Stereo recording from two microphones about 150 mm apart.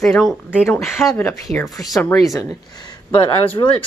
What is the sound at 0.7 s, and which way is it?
Speech, 15° left (ahead or behind).